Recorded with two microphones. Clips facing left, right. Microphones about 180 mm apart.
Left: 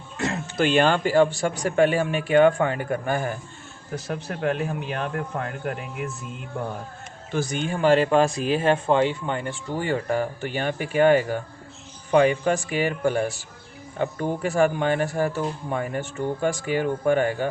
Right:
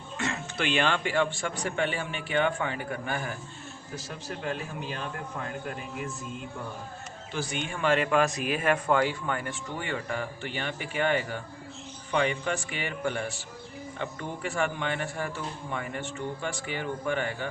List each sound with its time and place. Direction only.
0.2 s a man's voice: 40° left (ahead or behind)
3.9 s a man's voice: 60° left (ahead or behind)
7.3 s speech: 40° left (ahead or behind)